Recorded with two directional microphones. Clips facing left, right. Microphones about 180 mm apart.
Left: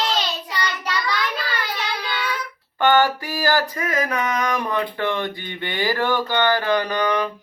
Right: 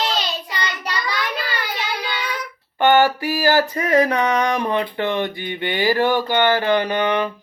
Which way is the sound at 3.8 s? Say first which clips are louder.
Right 6 dB; 35° right (ahead or behind).